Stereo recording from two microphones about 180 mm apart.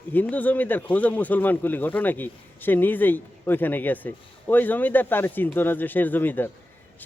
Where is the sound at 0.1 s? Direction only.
10° left (ahead or behind).